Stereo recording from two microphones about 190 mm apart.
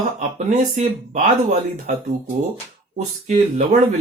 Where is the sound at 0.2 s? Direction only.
40° right (ahead or behind).